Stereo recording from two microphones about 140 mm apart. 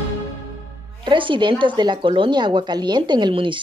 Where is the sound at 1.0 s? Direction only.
35° right (ahead or behind).